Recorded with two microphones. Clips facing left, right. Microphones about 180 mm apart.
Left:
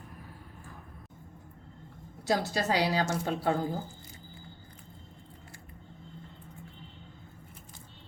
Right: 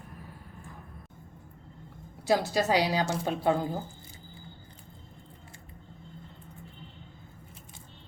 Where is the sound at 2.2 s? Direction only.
15° right (ahead or behind).